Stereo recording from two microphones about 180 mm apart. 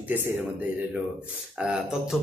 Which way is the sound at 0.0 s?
10° right (ahead or behind).